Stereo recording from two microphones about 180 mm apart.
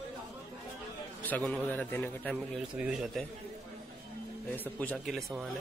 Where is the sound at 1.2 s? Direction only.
10° left (ahead or behind).